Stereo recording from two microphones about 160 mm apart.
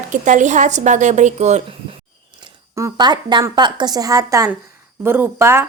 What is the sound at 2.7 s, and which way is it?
A woman's voice, 20° right (ahead or behind).